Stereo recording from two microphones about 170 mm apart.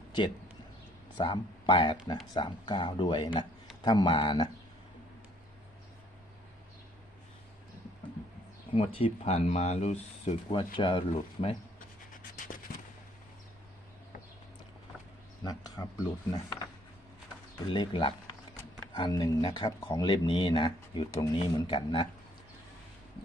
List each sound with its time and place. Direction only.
1.2 s speech: 30° left (ahead or behind)
8.7 s speech: 35° left (ahead or behind)
15.4 s a sound: 20° left (ahead or behind)
17.7 s speech: 30° left (ahead or behind)